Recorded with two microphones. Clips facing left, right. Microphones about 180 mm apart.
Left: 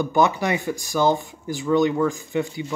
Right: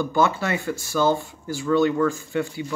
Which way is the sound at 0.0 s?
20° left (ahead or behind).